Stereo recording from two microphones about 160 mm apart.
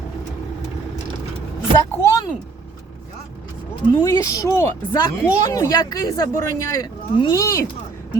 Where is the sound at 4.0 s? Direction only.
20° left (ahead or behind).